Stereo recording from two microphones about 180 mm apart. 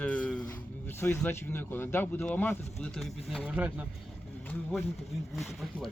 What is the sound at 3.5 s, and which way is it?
Speech, 10° right (ahead or behind).